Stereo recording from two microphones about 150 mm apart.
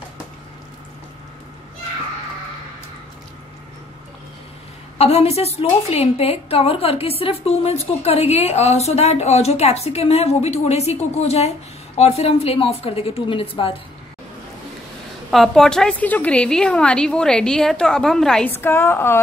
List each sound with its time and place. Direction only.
4.9 s a woman's voice: 45° left (ahead or behind)
15.3 s a woman's voice: centre (ahead or behind)
18.5 s a woman's voice: 15° left (ahead or behind)